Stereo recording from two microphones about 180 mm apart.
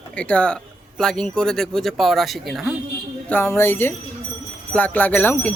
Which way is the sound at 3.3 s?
10° left (ahead or behind).